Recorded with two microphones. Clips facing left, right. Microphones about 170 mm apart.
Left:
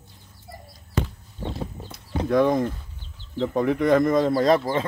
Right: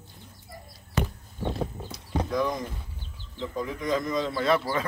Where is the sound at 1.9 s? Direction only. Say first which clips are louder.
Left 9 dB; 60° left (ahead or behind).